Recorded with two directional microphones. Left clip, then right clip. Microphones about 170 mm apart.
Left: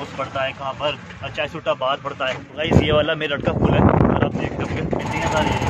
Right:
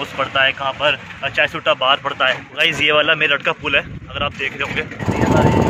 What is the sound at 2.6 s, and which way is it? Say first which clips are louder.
Speech: right 3 dB; 15° left (ahead or behind).